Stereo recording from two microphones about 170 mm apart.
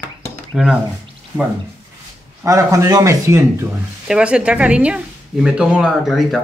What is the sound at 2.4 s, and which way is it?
Speech, 20° right (ahead or behind).